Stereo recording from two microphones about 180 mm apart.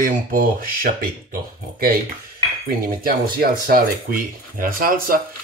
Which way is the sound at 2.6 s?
55° right (ahead or behind).